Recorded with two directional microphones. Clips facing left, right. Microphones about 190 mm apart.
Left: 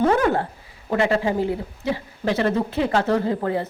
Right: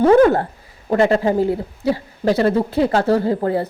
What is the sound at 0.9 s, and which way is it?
Speech, 40° right (ahead or behind).